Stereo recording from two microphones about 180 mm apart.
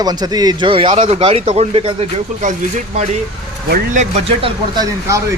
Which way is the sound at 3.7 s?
40° right (ahead or behind).